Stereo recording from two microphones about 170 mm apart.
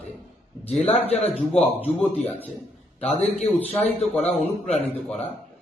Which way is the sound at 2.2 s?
10° left (ahead or behind).